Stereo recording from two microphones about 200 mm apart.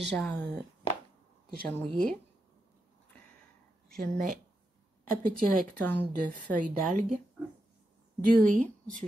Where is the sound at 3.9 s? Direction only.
45° right (ahead or behind).